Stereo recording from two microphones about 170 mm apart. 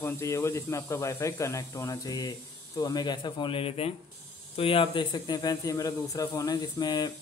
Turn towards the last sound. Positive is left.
turn(degrees=25)  # may be behind; listen again after turning